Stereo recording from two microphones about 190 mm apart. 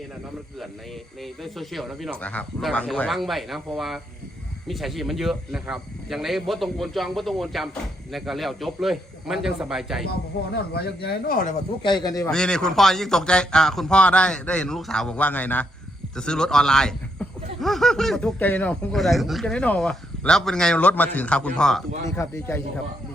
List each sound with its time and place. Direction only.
1.2 s speech: centre (ahead or behind)
10.1 s speech: 55° left (ahead or behind)
11.8 s a man's voice: 25° left (ahead or behind)
12.3 s a man's voice: 5° left (ahead or behind)